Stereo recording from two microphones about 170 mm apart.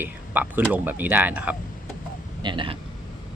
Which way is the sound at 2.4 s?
30° right (ahead or behind).